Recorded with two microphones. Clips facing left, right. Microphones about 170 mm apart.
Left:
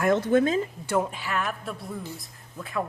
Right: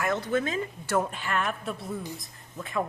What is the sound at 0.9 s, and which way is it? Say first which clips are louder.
A woman's voice: even; 10° left (ahead or behind).